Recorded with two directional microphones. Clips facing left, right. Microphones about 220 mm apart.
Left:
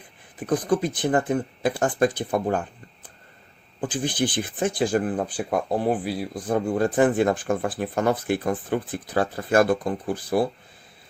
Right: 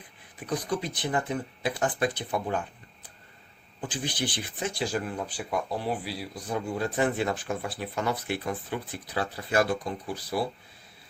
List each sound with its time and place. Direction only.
0.3 s speech: 50° left (ahead or behind)
3.8 s speech: 50° left (ahead or behind)